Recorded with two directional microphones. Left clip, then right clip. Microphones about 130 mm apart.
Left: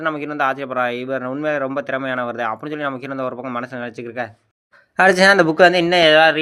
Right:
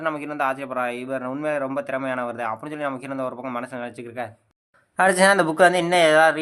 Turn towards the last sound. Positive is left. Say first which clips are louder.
# left 4 dB
turn(degrees=20)  # may be behind; listen again after turning